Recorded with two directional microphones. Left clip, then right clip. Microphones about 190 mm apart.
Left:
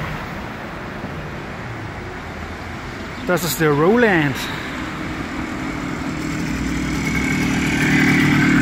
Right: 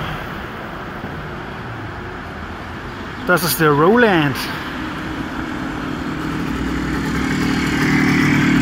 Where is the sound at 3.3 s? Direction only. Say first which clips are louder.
Right 3 dB; centre (ahead or behind).